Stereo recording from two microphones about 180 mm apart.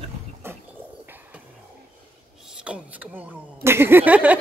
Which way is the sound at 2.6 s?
5° right (ahead or behind).